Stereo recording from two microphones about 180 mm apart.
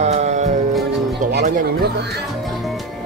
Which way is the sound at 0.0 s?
40° right (ahead or behind).